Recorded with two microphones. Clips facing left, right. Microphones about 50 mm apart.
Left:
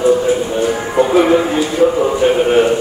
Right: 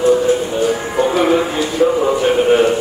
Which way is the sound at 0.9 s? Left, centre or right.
Centre.